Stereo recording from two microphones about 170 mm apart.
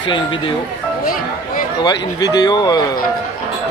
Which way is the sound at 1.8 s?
25° left (ahead or behind).